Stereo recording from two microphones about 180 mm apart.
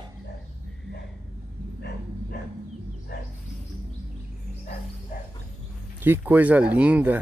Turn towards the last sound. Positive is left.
turn(degrees=-5)  # may be behind; listen again after turning